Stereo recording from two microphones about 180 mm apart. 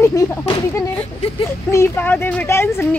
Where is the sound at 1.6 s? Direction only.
15° left (ahead or behind).